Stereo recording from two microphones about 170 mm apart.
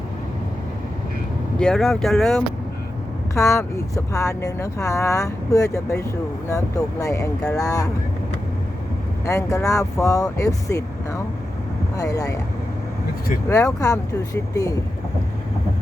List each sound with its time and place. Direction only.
1.5 s speech: 5° left (ahead or behind)
3.3 s speech: 15° left (ahead or behind)
9.2 s speech: 20° left (ahead or behind)
13.5 s speech: 20° left (ahead or behind)